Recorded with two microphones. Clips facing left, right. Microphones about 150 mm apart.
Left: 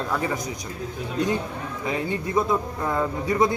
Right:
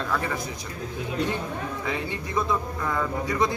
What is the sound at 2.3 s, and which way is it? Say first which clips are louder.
Speech: left 2 dB; 25° left (ahead or behind).